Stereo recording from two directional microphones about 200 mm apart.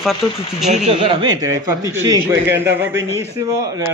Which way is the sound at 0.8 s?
25° right (ahead or behind).